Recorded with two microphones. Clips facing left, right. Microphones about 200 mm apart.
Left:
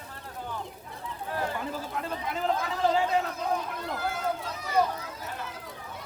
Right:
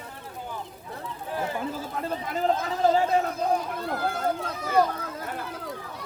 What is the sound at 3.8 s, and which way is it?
Run, 55° right (ahead or behind).